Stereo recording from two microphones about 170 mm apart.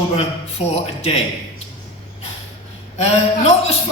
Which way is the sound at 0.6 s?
35° left (ahead or behind).